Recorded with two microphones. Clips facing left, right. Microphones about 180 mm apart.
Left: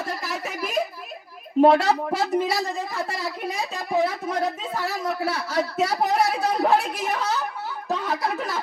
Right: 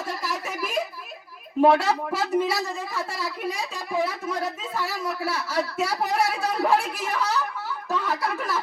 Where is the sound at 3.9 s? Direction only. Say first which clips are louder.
Left 3 dB; 25° left (ahead or behind).